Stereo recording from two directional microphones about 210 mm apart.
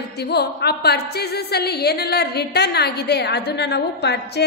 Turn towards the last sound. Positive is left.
turn(degrees=55)  # may be behind; listen again after turning